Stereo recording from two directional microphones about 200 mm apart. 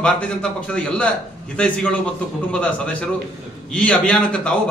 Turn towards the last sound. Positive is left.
turn(degrees=5)  # may be behind; listen again after turning